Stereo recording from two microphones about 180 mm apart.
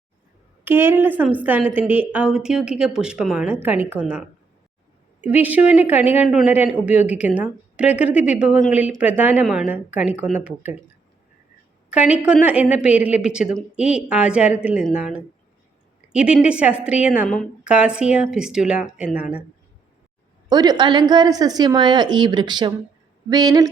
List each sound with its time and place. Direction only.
0.6 s a woman's voice: 10° right (ahead or behind)
5.2 s speech: 10° right (ahead or behind)
11.9 s a woman's voice: 5° right (ahead or behind)
16.1 s a woman's voice: 5° right (ahead or behind)
17.2 s a woman's voice: 5° left (ahead or behind)
17.6 s a woman's voice: 5° right (ahead or behind)
20.5 s a woman's voice: 20° right (ahead or behind)